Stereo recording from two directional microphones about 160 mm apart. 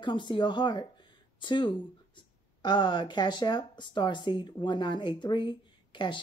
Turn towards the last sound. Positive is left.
turn(degrees=30)  # may be behind; listen again after turning